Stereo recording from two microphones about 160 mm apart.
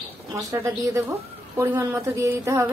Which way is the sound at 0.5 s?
15° right (ahead or behind).